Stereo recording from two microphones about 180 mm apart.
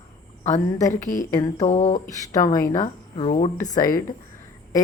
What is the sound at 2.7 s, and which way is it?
Speech, 40° left (ahead or behind).